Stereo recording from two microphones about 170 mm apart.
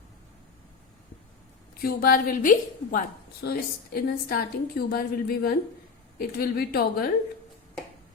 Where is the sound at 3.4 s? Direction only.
70° left (ahead or behind).